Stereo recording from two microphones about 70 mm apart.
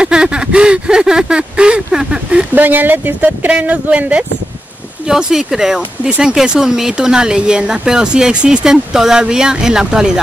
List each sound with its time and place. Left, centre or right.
0.0 s a sound: centre
2.5 s speech: right
5.0 s speech: centre